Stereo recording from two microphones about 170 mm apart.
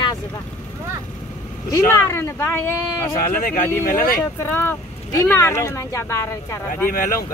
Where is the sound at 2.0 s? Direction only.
15° left (ahead or behind).